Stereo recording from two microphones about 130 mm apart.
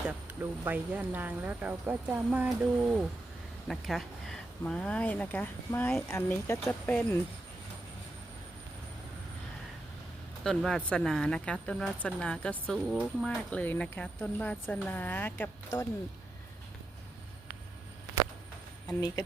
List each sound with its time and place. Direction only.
0.0 s vehicle: 5° right (ahead or behind)
0.6 s speech: 15° right (ahead or behind)
3.7 s speech: centre (ahead or behind)
10.4 s speech: centre (ahead or behind)
18.9 s speech: 25° left (ahead or behind)